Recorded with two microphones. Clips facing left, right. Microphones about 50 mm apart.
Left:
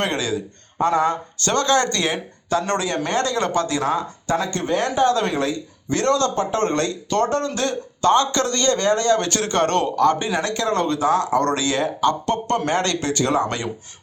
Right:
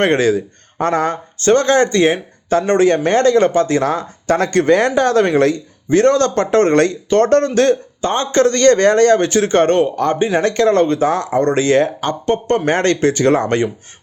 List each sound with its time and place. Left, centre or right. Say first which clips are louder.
0.0 s a man's voice: right 9 dB; right
1.4 s speech: right 8 dB; right
2.7 s a man's voice: right 9 dB; right
3.8 s speech: right 5 dB; right
4.9 s a man's voice: right 5 dB; right
5.9 s a man's voice: right 7 dB; right
8.0 s a man's voice: right 3 dB; right
9.1 s speech: right 7 dB; right
10.4 s a man's voice: right 10 dB; right
11.3 s speech: right 5 dB; right
11.6 s speech: right 5 dB; right